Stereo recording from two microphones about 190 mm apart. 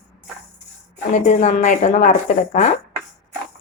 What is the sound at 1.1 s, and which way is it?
Speech, 40° left (ahead or behind).